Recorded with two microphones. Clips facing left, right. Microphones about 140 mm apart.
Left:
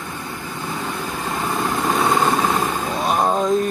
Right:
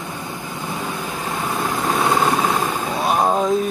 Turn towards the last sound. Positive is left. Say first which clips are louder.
# even
turn(degrees=-5)  # may be behind; listen again after turning